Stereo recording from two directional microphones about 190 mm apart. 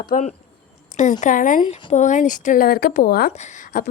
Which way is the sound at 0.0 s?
40° left (ahead or behind).